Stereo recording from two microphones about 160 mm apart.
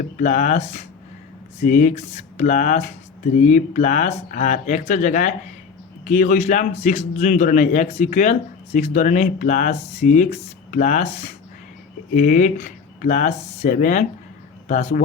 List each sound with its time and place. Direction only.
0.2 s speech: 50° left (ahead or behind)
12.1 s speech: 55° left (ahead or behind)